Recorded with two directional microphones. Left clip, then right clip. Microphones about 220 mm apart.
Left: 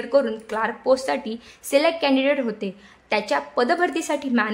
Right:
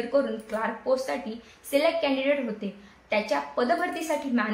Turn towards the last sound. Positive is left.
turn(degrees=50)  # may be behind; listen again after turning